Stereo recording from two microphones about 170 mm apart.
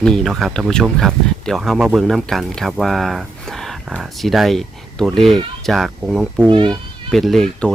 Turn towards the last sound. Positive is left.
turn(degrees=0)  # may be behind; listen again after turning